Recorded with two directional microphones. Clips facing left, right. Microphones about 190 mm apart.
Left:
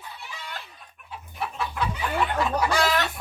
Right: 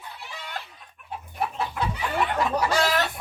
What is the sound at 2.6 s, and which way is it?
Chicken, 40° right (ahead or behind).